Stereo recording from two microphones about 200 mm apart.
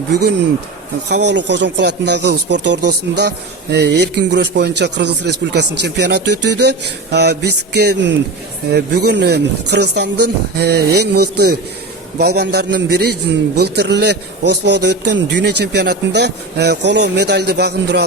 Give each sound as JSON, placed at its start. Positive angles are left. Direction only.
{"t": 1.0, "sound": "speech", "side_deg": -60}